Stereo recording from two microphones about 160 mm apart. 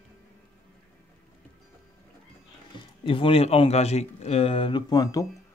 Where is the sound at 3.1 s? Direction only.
35° left (ahead or behind).